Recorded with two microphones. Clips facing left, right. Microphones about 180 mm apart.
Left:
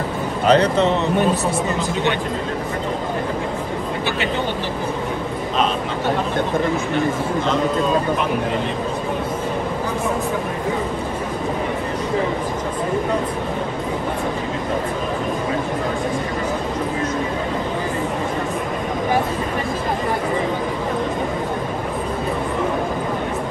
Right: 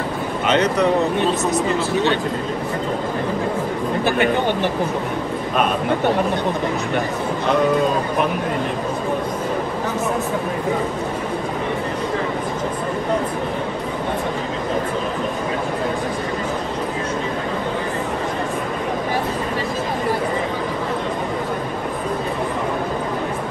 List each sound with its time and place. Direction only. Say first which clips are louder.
0.5 s speech: left 2 dB; 30° left (ahead or behind)